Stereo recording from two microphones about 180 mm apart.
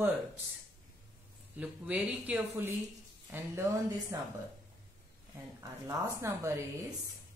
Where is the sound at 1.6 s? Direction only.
5° right (ahead or behind).